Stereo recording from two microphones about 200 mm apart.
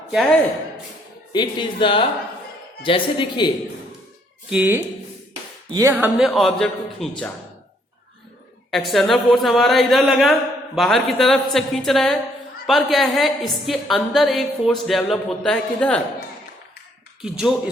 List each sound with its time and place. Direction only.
0.1 s speech: centre (ahead or behind)
1.3 s speech: 25° left (ahead or behind)
4.4 s a woman's voice: 5° right (ahead or behind)
8.7 s a woman's voice: centre (ahead or behind)
17.2 s a woman's voice: centre (ahead or behind)